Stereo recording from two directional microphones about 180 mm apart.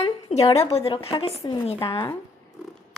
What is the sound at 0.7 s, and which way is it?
A woman's voice, 30° left (ahead or behind).